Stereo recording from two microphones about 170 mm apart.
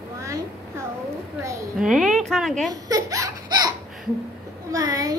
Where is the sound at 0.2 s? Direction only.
20° right (ahead or behind).